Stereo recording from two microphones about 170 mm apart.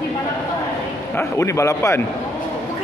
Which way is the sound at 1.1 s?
15° left (ahead or behind).